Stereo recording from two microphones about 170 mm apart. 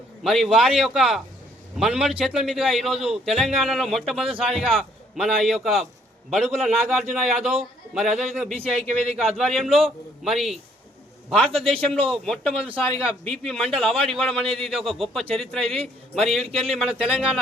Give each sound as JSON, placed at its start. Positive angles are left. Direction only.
{"t": 0.2, "sound": "a man's voice", "side_deg": 0}
{"t": 16.4, "sound": "a man's voice", "side_deg": -35}
{"t": 16.7, "sound": "a man's voice", "side_deg": -5}